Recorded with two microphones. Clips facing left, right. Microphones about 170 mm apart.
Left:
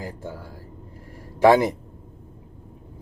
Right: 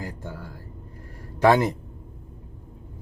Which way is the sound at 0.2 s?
10° left (ahead or behind).